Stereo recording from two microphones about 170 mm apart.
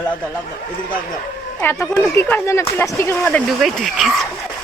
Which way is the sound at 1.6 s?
15° left (ahead or behind).